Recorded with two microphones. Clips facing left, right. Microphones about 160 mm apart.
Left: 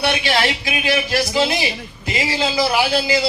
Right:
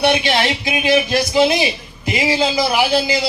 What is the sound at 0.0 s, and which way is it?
A man's voice, 20° right (ahead or behind).